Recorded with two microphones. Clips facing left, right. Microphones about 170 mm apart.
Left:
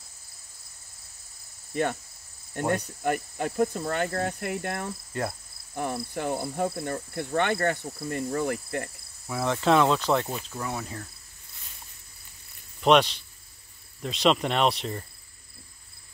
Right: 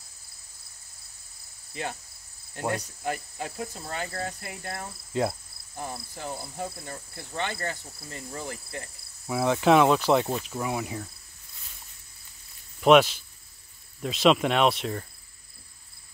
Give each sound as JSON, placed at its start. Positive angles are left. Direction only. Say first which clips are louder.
{"t": 1.7, "sound": "cricket", "louder": "left 7 dB", "side_deg": 55}
{"t": 3.0, "sound": "insect", "louder": "left 5 dB", "side_deg": 55}
{"t": 9.3, "sound": "speech", "louder": "right 2 dB", "side_deg": -10}
{"t": 12.8, "sound": "speech", "louder": "right 2 dB", "side_deg": -5}